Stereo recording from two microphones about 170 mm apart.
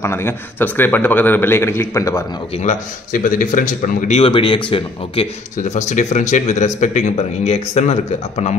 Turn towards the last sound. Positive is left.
turn(degrees=40)  # may be behind; listen again after turning